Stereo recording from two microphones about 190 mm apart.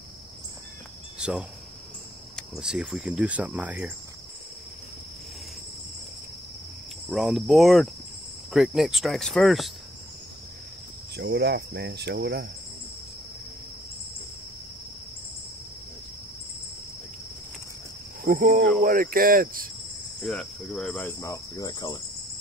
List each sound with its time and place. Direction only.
1.1 s cricket: 5° right (ahead or behind)
2.3 s speech: centre (ahead or behind)
7.1 s speech: centre (ahead or behind)
11.1 s speech: 60° right (ahead or behind)
18.2 s cricket: 50° right (ahead or behind)
20.2 s speech: centre (ahead or behind)
21.2 s cricket: 15° left (ahead or behind)